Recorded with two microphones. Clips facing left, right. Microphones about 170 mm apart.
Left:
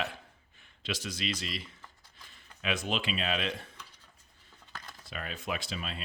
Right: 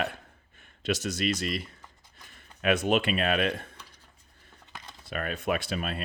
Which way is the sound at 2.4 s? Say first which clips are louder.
Right 8 dB; 55° right (ahead or behind).